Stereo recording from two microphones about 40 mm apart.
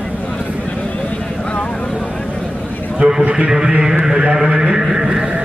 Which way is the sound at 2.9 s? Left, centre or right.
Centre.